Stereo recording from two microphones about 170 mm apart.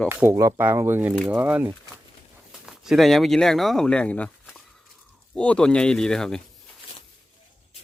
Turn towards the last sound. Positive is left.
turn(degrees=5)  # may be behind; listen again after turning